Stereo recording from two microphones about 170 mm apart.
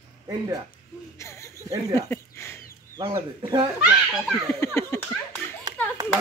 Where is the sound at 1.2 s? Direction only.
15° left (ahead or behind).